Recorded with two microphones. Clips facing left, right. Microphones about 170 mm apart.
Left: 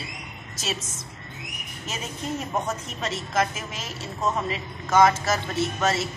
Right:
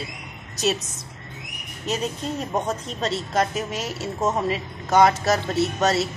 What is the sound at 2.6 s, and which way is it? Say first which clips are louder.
Speech: right 4 dB; 30° right (ahead or behind).